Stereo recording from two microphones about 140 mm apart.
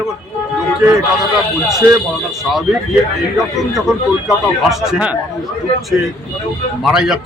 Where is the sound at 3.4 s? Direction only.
Centre (ahead or behind).